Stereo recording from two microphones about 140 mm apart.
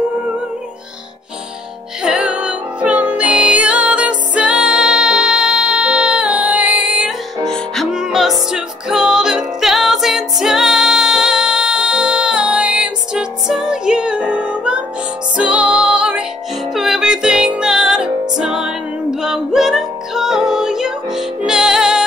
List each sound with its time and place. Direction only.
2.0 s music: 5° right (ahead or behind)